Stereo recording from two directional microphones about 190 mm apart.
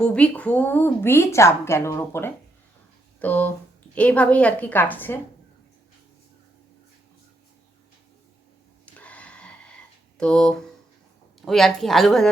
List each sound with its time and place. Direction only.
0.0 s a woman's voice: 5° left (ahead or behind)
9.0 s a sound: 5° left (ahead or behind)
10.2 s a woman's voice: 5° left (ahead or behind)